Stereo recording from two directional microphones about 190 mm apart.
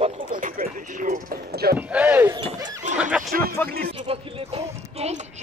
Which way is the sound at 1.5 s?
55° right (ahead or behind).